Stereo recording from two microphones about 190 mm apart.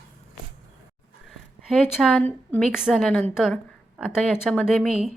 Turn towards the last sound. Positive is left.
turn(degrees=35)  # may be behind; listen again after turning